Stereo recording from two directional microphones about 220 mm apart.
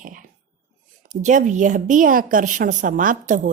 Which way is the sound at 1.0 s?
35° right (ahead or behind).